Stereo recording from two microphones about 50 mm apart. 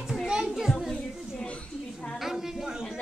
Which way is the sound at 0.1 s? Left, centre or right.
Centre.